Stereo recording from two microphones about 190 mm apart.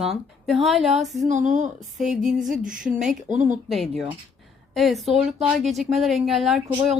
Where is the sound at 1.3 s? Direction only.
40° right (ahead or behind).